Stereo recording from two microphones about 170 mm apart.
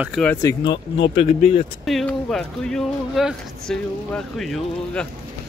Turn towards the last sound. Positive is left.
turn(degrees=5)  # may be behind; listen again after turning